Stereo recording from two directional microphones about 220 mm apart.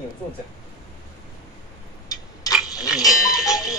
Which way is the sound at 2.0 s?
15° left (ahead or behind).